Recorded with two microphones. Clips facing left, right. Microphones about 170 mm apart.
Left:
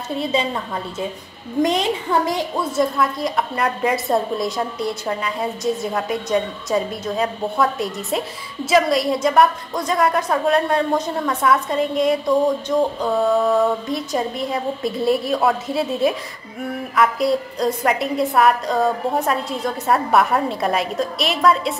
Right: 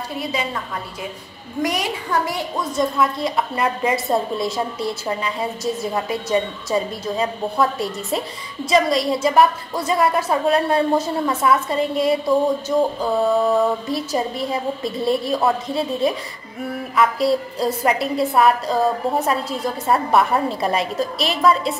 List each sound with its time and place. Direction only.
0.2 s a woman's voice: 25° left (ahead or behind)
1.6 s a woman's voice: 25° left (ahead or behind)
2.7 s a woman's voice: centre (ahead or behind)